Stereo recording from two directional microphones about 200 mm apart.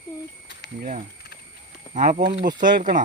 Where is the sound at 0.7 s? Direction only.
45° right (ahead or behind).